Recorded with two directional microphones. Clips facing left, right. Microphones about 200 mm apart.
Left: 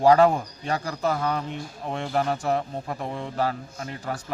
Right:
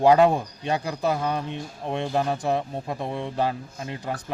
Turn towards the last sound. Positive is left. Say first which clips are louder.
# right 1 dB
turn(degrees=-15)  # may be behind; listen again after turning